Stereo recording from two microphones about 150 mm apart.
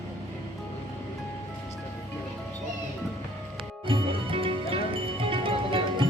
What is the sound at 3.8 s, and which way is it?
Music, 35° right (ahead or behind).